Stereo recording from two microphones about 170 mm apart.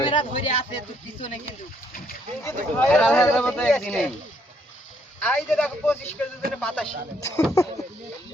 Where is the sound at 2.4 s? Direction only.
10° left (ahead or behind).